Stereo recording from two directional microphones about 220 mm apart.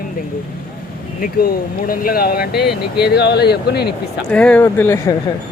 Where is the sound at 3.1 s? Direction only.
50° left (ahead or behind).